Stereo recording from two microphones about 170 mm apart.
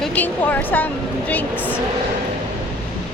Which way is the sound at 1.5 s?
10° right (ahead or behind).